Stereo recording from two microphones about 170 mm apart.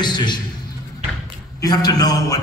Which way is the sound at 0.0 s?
25° left (ahead or behind).